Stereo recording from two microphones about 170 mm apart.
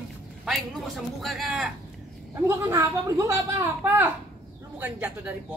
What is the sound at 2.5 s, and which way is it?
Speech, 15° right (ahead or behind).